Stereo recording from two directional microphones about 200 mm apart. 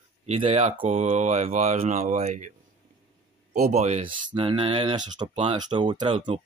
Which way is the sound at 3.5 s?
35° right (ahead or behind).